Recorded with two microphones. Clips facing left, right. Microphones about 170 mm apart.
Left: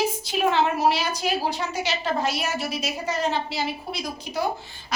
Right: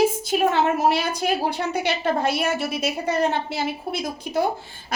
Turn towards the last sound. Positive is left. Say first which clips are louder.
# right 2 dB
turn(degrees=-50)  # may be behind; listen again after turning